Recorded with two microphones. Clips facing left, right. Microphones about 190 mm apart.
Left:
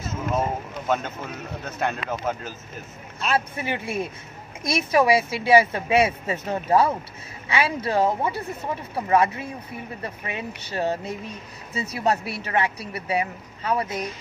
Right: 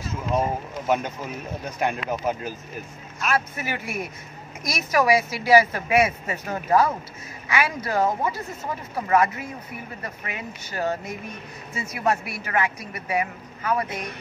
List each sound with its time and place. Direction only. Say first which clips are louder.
0.8 s a man's voice: right 1 dB; 15° right (ahead or behind)
3.3 s a woman's voice: left 1 dB; 30° left (ahead or behind)